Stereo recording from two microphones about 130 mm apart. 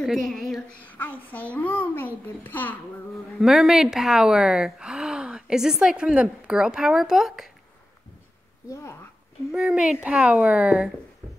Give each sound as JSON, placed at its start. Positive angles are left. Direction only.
{"t": 0.0, "sound": "speech", "side_deg": 0}
{"t": 0.8, "sound": "a child's voice", "side_deg": 10}
{"t": 3.3, "sound": "speech", "side_deg": 0}
{"t": 8.6, "sound": "speech", "side_deg": 20}
{"t": 9.5, "sound": "speech", "side_deg": -5}